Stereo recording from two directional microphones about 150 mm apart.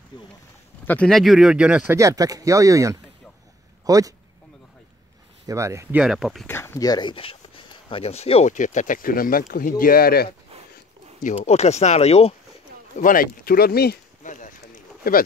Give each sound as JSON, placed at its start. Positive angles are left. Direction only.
{"t": 0.1, "sound": "speech", "side_deg": 30}
{"t": 0.8, "sound": "speech", "side_deg": 5}
{"t": 2.0, "sound": "speech", "side_deg": -20}
{"t": 5.5, "sound": "speech", "side_deg": -20}
{"t": 5.9, "sound": "speech", "side_deg": -5}
{"t": 6.4, "sound": "speech", "side_deg": 15}
{"t": 11.3, "sound": "speech", "side_deg": 45}
{"t": 13.0, "sound": "speech", "side_deg": 70}